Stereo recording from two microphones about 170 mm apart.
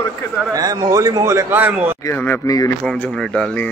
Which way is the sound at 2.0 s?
15° left (ahead or behind).